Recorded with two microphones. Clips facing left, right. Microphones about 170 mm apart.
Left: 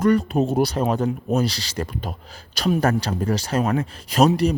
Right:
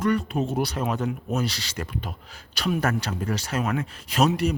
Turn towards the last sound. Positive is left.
turn(degrees=35)  # may be behind; listen again after turning